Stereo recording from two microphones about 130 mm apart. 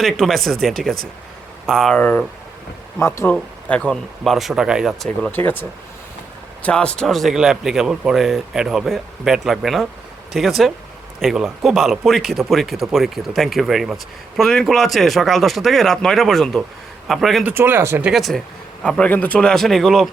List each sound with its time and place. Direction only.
0.0 s speech: centre (ahead or behind)
5.0 s speech: 10° left (ahead or behind)
17.4 s speech: 15° right (ahead or behind)
18.0 s speech: centre (ahead or behind)